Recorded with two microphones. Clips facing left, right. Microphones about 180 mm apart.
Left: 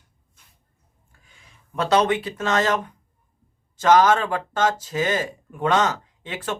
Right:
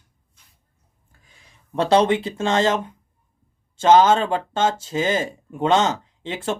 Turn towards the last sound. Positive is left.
turn(degrees=-25)  # may be behind; listen again after turning